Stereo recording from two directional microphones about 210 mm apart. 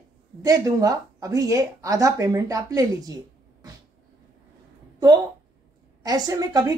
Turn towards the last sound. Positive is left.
turn(degrees=-15)  # may be behind; listen again after turning